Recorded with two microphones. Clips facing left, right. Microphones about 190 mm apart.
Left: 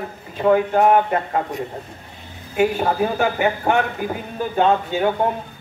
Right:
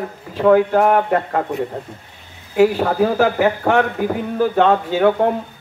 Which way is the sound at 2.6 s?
75° right (ahead or behind).